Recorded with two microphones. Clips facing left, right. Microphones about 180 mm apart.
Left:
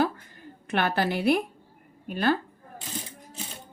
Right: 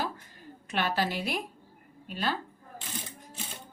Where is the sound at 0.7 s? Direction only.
55° left (ahead or behind).